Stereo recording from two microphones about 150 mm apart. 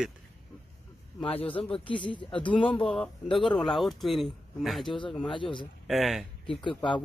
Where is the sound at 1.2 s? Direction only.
35° left (ahead or behind).